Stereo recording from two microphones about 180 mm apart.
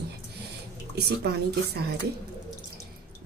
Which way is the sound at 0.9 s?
65° right (ahead or behind).